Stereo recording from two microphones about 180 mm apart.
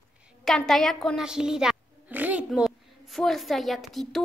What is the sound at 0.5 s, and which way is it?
A woman's voice, centre (ahead or behind).